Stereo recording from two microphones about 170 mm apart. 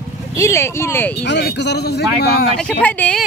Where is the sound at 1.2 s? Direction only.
85° left.